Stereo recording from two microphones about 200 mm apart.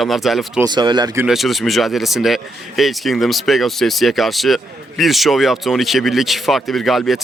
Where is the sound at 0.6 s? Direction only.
20° right (ahead or behind).